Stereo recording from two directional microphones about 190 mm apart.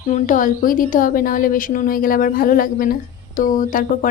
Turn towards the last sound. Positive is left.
turn(degrees=45)  # may be behind; listen again after turning